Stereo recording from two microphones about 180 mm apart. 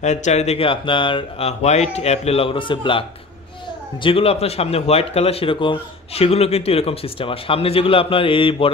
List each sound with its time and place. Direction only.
0.0 s a man's voice: 40° left (ahead or behind)